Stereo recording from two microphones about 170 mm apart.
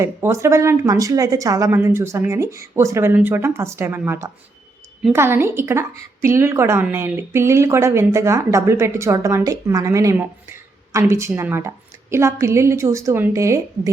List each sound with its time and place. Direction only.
0.0 s a woman's voice: 15° right (ahead or behind)